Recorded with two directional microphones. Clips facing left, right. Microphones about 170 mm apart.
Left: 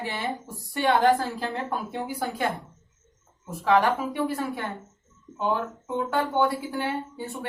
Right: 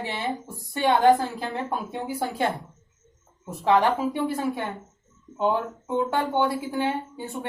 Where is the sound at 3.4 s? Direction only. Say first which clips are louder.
Right 1 dB; 25° right (ahead or behind).